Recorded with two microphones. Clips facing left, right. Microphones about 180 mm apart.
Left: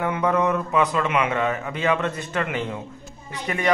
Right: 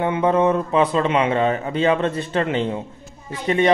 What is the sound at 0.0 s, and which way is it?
A man's voice, 25° right (ahead or behind).